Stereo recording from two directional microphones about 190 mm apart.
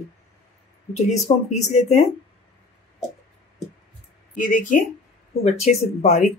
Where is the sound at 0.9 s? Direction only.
35° left (ahead or behind).